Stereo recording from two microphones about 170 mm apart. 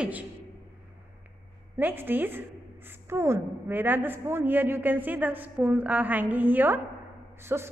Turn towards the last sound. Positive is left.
turn(degrees=-15)  # may be behind; listen again after turning